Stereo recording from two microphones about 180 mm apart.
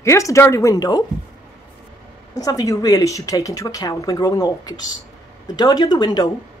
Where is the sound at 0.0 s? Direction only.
15° left (ahead or behind).